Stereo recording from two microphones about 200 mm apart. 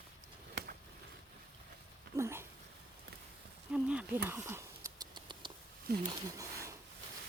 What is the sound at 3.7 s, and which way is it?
Rodents, 5° right (ahead or behind).